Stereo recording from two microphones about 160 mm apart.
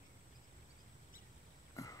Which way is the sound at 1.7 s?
20° left (ahead or behind).